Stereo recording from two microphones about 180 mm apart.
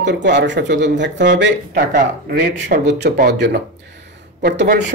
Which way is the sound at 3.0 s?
70° right (ahead or behind).